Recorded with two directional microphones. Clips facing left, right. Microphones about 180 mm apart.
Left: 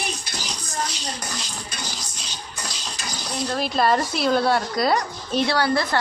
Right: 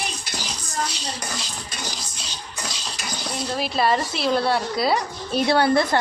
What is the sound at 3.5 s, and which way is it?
Speech, 5° right (ahead or behind).